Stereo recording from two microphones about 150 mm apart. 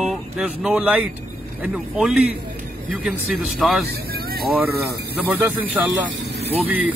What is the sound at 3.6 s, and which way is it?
Speech, centre (ahead or behind).